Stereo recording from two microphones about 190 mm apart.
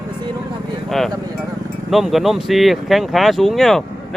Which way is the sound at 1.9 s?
Centre (ahead or behind).